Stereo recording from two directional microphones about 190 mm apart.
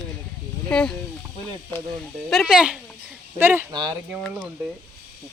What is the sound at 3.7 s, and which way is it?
Speech, 20° right (ahead or behind).